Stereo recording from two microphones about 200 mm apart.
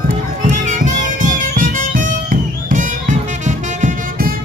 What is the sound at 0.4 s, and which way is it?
Music, 40° right (ahead or behind).